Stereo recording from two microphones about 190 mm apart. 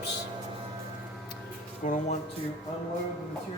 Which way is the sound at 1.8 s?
45° left (ahead or behind).